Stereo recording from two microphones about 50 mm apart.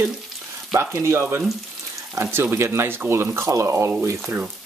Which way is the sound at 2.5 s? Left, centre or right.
Right.